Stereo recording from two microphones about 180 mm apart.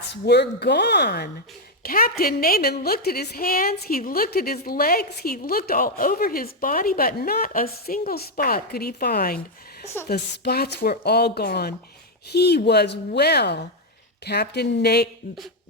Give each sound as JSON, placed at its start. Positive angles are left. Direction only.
{"t": 0.1, "sound": "a woman's voice", "side_deg": 65}
{"t": 1.8, "sound": "a woman's voice", "side_deg": 55}